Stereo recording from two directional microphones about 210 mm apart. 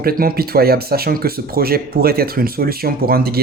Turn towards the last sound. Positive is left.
turn(degrees=-45)  # may be behind; listen again after turning